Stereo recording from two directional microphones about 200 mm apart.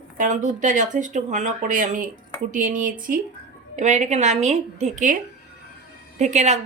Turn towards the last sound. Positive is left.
turn(degrees=-35)  # may be behind; listen again after turning